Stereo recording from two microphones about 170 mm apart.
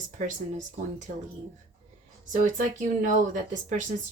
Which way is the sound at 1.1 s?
50° right (ahead or behind).